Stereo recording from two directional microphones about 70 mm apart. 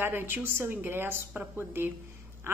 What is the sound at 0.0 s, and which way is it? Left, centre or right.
A woman's voice, right.